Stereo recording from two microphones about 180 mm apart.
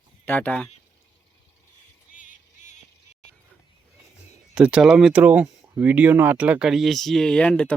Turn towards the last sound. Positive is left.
turn(degrees=5)  # may be behind; listen again after turning